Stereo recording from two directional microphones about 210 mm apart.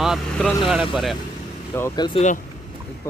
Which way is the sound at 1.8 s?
15° left (ahead or behind).